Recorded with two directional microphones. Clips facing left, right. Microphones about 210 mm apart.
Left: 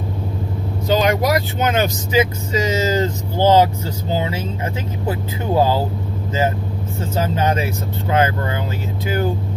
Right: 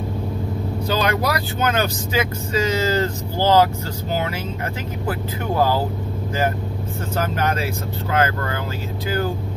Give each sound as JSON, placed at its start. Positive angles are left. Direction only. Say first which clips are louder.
{"t": 0.8, "sound": "speech", "louder": "left 5 dB", "side_deg": 20}
{"t": 7.2, "sound": "speech", "louder": "left 4 dB", "side_deg": 25}